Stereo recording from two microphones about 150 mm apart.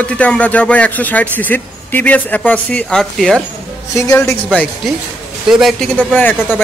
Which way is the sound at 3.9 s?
20° left (ahead or behind).